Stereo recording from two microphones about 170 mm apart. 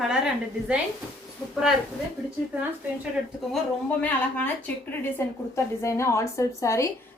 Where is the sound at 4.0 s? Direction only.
10° left (ahead or behind).